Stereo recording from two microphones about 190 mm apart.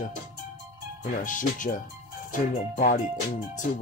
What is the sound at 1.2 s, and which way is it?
Speech, 45° left (ahead or behind).